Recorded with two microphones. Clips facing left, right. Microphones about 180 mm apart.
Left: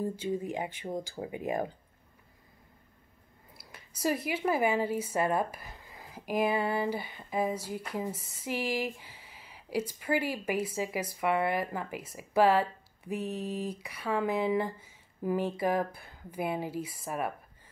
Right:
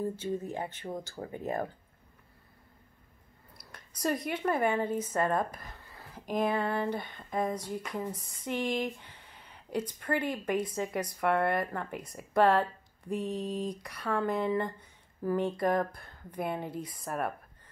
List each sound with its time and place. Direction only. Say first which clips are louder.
0.0 s speech: left 1 dB; 10° left (ahead or behind)
3.5 s speech: even; 5° left (ahead or behind)